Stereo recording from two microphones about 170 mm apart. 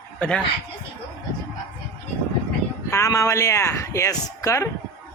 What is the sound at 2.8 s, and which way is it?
Speech, 15° left (ahead or behind).